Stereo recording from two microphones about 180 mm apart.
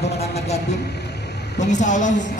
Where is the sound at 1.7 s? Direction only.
40° left (ahead or behind).